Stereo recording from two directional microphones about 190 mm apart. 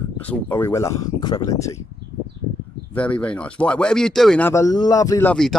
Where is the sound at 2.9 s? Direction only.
5° left (ahead or behind).